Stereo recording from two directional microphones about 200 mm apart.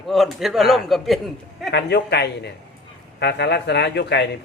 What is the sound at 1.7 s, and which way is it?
A man's voice, 55° left (ahead or behind).